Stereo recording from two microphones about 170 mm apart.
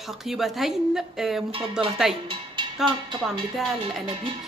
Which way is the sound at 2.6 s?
25° right (ahead or behind).